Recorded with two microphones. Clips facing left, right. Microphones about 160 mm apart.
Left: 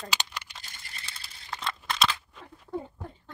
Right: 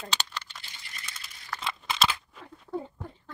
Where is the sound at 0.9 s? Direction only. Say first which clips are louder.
Right 1 dB; 30° left (ahead or behind).